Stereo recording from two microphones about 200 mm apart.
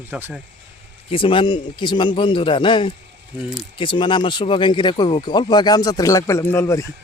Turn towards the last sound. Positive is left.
turn(degrees=15)  # may be behind; listen again after turning